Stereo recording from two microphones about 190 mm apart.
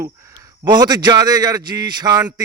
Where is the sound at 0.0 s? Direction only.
15° right (ahead or behind).